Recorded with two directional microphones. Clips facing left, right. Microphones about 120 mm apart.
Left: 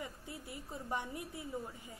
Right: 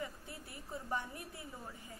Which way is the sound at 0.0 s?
20° left (ahead or behind).